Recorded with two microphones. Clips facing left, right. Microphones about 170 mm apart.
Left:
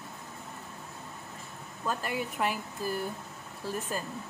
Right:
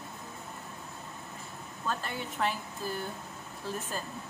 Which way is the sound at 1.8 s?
10° left (ahead or behind).